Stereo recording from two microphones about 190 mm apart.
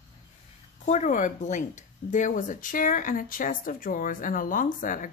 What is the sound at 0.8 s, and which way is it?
Speech, 40° left (ahead or behind).